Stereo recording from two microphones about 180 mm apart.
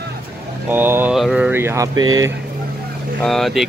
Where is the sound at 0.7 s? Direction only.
10° right (ahead or behind).